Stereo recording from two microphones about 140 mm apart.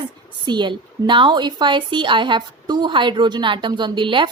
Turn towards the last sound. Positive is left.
turn(degrees=-35)  # may be behind; listen again after turning